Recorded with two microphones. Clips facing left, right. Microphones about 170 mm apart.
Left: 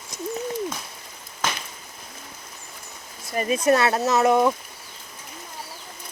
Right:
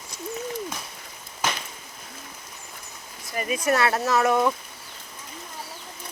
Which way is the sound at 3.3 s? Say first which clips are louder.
Left 4 dB; 30° left (ahead or behind).